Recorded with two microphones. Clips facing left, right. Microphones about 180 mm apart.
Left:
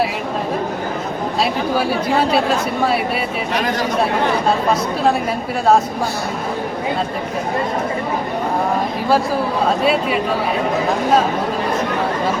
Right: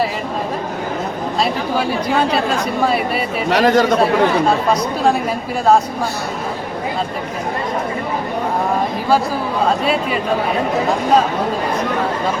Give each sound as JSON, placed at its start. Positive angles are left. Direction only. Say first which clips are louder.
{"t": 3.5, "sound": "speech", "louder": "right 9 dB", "side_deg": -80}
{"t": 9.8, "sound": "speech", "louder": "left 1 dB", "side_deg": 5}